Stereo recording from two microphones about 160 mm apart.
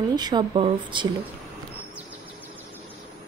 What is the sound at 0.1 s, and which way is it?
Speech, 25° right (ahead or behind).